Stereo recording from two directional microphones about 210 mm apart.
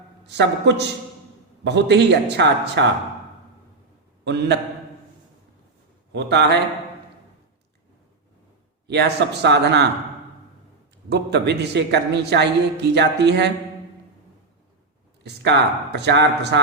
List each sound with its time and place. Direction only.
0.3 s a man's voice: 55° right (ahead or behind)
4.2 s a man's voice: 55° right (ahead or behind)
6.1 s a man's voice: 55° right (ahead or behind)
8.9 s a man's voice: 50° right (ahead or behind)
11.1 s a man's voice: 55° right (ahead or behind)
15.2 s a man's voice: 50° right (ahead or behind)